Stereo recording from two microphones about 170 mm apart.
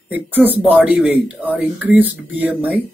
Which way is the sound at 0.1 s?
10° right (ahead or behind).